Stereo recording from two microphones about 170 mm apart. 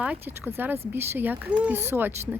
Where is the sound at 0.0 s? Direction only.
10° right (ahead or behind).